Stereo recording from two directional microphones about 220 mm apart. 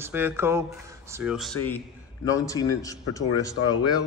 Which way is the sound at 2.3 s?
15° left (ahead or behind).